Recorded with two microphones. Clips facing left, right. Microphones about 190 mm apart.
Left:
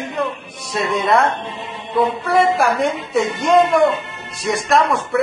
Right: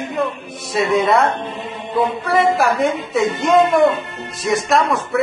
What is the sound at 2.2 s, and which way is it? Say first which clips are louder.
Speech: right 1 dB; centre (ahead or behind).